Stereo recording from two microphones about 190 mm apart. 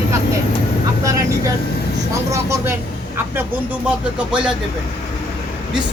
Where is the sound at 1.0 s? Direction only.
15° right (ahead or behind).